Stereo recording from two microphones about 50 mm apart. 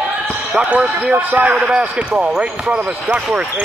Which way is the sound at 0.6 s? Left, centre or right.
Right.